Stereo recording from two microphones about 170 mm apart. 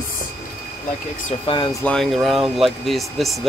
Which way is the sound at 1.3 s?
30° left (ahead or behind).